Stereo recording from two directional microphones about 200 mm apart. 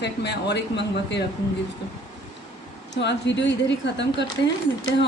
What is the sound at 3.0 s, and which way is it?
Speech, 60° left (ahead or behind).